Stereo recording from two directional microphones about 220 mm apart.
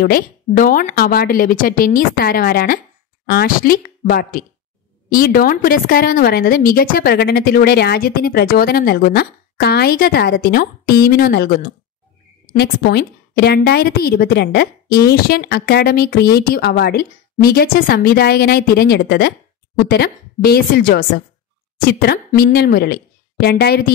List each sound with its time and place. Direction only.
0.0 s a woman's voice: 40° left (ahead or behind)